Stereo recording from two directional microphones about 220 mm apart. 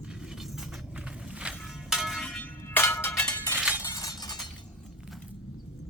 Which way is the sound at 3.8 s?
15° left (ahead or behind).